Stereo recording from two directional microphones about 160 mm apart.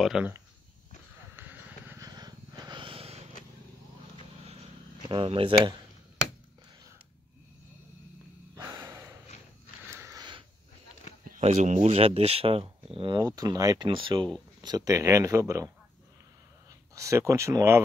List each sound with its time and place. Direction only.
0.0 s speech: 5° right (ahead or behind)
1.3 s a sound: 10° right (ahead or behind)
2.0 s a sound: 25° right (ahead or behind)
5.0 s speech: 30° right (ahead or behind)
8.6 s snort: 15° right (ahead or behind)
9.8 s sniff: 15° right (ahead or behind)
11.4 s speech: 45° right (ahead or behind); by 15.7 s 20° right (ahead or behind)
16.9 s speech: 20° right (ahead or behind)